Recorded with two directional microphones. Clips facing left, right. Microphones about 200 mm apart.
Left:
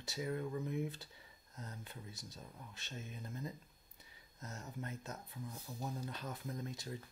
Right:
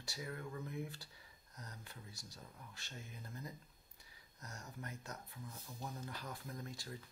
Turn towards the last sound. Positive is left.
turn(degrees=20)  # may be behind; listen again after turning